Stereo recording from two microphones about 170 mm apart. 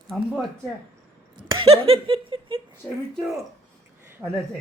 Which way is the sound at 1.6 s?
35° right (ahead or behind).